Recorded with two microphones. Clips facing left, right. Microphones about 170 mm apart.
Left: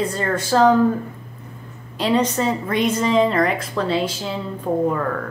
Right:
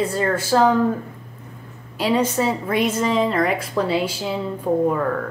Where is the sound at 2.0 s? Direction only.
5° right (ahead or behind).